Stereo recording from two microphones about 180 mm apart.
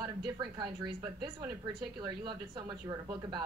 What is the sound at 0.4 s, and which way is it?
Speech, 25° right (ahead or behind).